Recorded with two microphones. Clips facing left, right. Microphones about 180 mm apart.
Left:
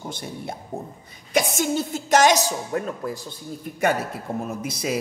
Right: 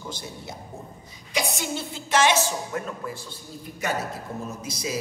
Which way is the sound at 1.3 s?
45° left (ahead or behind).